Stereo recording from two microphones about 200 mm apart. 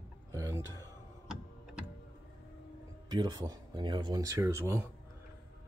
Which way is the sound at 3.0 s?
20° right (ahead or behind).